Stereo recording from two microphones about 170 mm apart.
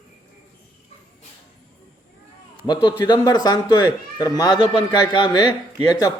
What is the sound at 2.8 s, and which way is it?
Speech, 25° left (ahead or behind).